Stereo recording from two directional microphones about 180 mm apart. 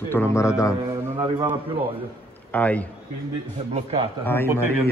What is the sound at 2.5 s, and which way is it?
Speech, 10° left (ahead or behind).